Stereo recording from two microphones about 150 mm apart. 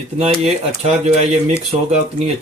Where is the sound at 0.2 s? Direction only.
45° right (ahead or behind).